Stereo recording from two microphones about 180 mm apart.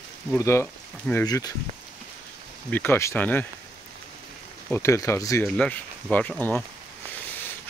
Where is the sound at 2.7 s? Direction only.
10° left (ahead or behind).